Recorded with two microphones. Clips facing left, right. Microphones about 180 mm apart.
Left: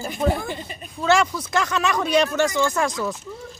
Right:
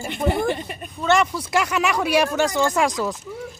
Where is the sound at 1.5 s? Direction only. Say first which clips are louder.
Right 1 dB; 10° right (ahead or behind).